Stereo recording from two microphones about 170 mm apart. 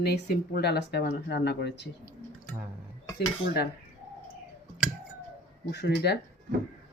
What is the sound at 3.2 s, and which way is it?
Speech, 75° left (ahead or behind).